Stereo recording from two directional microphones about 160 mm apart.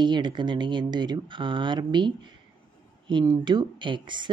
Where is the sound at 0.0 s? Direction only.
30° right (ahead or behind).